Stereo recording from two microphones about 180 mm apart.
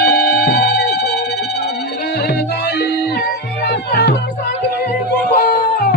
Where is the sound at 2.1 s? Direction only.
65° left (ahead or behind).